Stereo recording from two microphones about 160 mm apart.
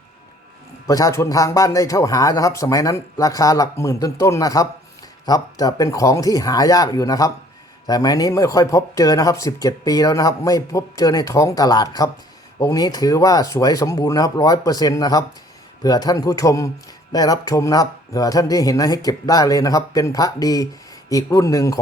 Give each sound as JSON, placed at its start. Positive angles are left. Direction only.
{"t": 0.9, "sound": "speech", "side_deg": 20}